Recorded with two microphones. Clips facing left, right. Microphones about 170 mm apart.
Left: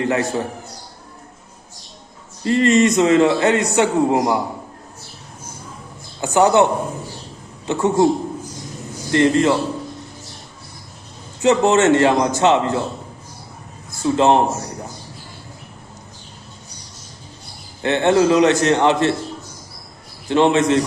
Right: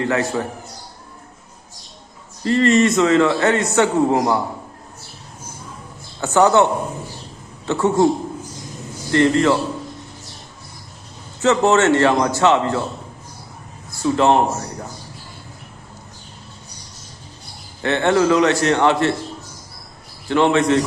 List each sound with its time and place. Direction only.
0.0 s a man's voice: 20° left (ahead or behind)
2.4 s a man's voice: 20° left (ahead or behind)
6.1 s a man's voice: 15° left (ahead or behind)
7.7 s a man's voice: 15° left (ahead or behind)
9.0 s a man's voice: 20° left (ahead or behind)
11.4 s a man's voice: 20° left (ahead or behind)
14.0 s a man's voice: 20° left (ahead or behind)
17.8 s a man's voice: 20° left (ahead or behind)
20.2 s a man's voice: 20° left (ahead or behind)